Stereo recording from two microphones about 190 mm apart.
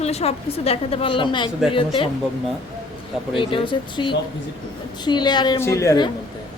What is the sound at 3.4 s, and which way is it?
A woman's voice, 25° left (ahead or behind).